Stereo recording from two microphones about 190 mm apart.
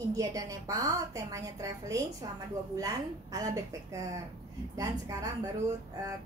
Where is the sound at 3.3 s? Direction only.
20° right (ahead or behind).